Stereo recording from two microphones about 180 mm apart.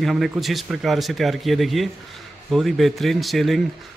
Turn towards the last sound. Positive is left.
turn(degrees=0)  # may be behind; listen again after turning